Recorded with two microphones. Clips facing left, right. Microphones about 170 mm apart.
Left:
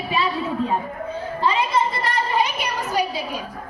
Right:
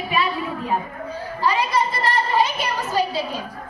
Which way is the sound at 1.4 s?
25° left (ahead or behind).